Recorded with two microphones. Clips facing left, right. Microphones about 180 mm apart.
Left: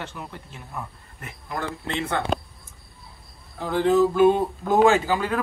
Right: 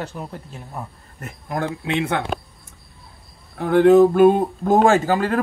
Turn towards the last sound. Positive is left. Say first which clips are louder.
# right 4 dB
turn(degrees=-45)  # may be behind; listen again after turning